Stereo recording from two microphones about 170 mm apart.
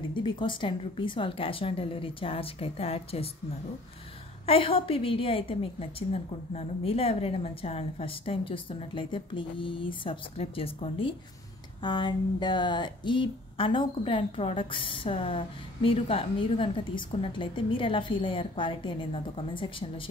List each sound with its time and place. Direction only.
0.1 s speech: 30° left (ahead or behind)
4.5 s speech: 30° left (ahead or behind)